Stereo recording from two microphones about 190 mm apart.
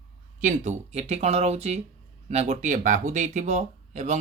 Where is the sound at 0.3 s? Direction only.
40° right (ahead or behind).